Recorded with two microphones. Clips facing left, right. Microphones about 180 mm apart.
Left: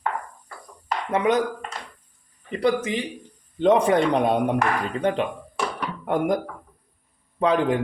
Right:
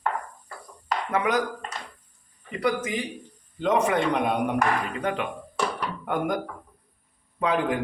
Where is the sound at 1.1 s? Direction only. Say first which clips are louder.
Left 4 dB; 25° left (ahead or behind).